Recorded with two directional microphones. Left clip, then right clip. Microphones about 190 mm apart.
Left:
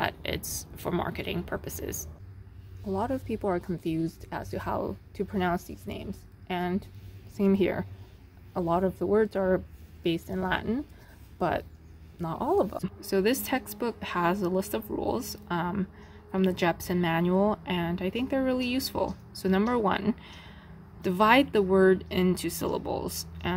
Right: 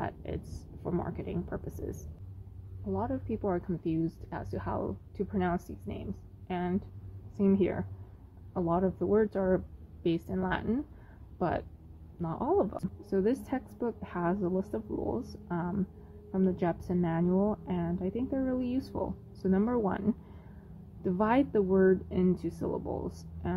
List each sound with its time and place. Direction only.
0.0 s a sound: 15° left (ahead or behind)
1.1 s a woman's voice: 10° left (ahead or behind)
2.9 s a woman's voice: 20° left (ahead or behind)
8.5 s a woman's voice: 10° left (ahead or behind)